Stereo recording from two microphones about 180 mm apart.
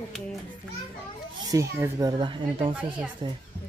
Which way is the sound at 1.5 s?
15° right (ahead or behind).